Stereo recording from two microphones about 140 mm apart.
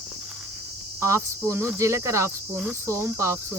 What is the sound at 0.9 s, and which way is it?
Speech, 20° right (ahead or behind).